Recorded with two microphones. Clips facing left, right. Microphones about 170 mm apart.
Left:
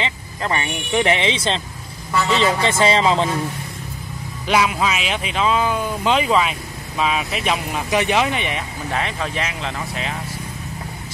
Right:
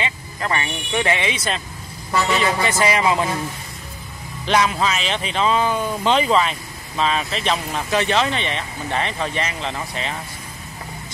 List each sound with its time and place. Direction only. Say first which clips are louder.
0.0 s speech: left 1 dB; 20° left (ahead or behind)
4.5 s speech: even; 5° left (ahead or behind)